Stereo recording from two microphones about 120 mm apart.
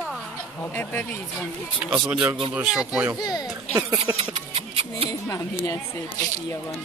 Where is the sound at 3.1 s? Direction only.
35° left (ahead or behind).